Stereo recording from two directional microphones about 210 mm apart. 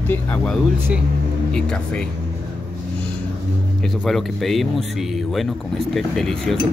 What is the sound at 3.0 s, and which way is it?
Vehicle, 5° left (ahead or behind).